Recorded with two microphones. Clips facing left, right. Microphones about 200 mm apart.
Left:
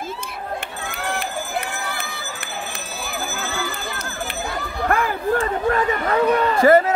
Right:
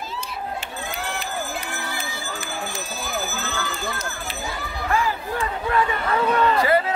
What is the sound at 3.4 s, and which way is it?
Run, 10° left (ahead or behind).